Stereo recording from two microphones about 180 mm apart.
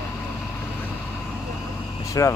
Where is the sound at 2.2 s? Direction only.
20° left (ahead or behind).